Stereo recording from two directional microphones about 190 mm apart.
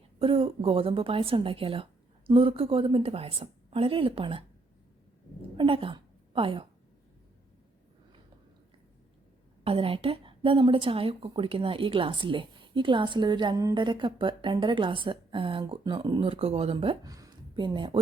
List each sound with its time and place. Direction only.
0.2 s a woman's voice: 30° right (ahead or behind)
5.5 s a sound: 30° right (ahead or behind)
9.6 s a woman's voice: 30° right (ahead or behind)